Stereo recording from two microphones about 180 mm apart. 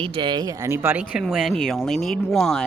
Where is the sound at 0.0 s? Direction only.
30° right (ahead or behind).